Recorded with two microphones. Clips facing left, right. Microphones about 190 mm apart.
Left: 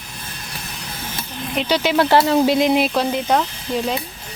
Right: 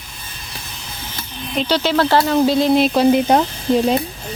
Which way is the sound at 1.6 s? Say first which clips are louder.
Right 1 dB; 10° left (ahead or behind).